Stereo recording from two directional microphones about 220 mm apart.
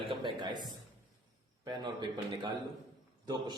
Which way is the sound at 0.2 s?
20° right (ahead or behind).